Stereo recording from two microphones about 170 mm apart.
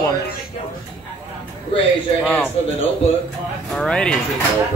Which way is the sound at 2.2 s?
10° left (ahead or behind).